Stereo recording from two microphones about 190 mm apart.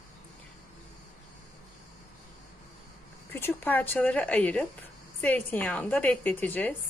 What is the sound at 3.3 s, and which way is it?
A woman's voice, 10° left (ahead or behind).